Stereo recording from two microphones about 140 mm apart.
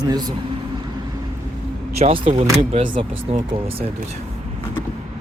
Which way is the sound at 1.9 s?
45° right (ahead or behind).